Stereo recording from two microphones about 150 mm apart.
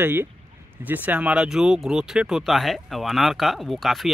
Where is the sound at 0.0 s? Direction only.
15° right (ahead or behind).